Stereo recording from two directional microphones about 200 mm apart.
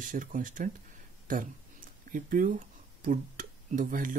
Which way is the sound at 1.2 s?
45° right (ahead or behind).